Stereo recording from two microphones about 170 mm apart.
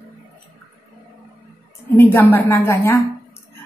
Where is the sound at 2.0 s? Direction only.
15° left (ahead or behind).